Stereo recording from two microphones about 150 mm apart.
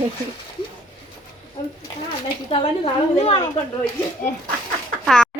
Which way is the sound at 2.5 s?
35° left (ahead or behind).